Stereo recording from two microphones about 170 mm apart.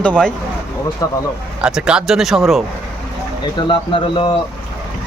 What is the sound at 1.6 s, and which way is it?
Speech, 5° right (ahead or behind).